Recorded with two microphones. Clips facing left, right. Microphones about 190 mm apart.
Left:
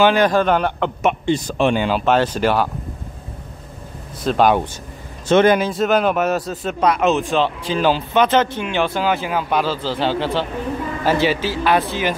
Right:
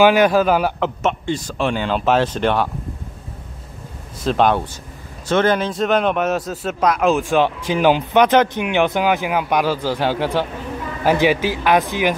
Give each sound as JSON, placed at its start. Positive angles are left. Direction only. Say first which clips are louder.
{"t": 0.0, "sound": "a man's voice", "louder": "right 2 dB", "side_deg": -5}
{"t": 1.0, "sound": "a man's voice", "louder": "left 6 dB", "side_deg": 20}
{"t": 1.9, "sound": "a man's voice", "louder": "even", "side_deg": 0}
{"t": 4.2, "sound": "a man's voice", "louder": "left 1 dB", "side_deg": 5}
{"t": 5.3, "sound": "a man's voice", "louder": "left 3 dB", "side_deg": 15}
{"t": 7.2, "sound": "speech", "louder": "right 2 dB", "side_deg": -15}